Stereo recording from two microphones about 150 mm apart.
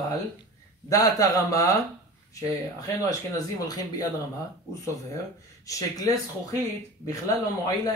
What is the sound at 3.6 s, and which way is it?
Speech, 25° left (ahead or behind).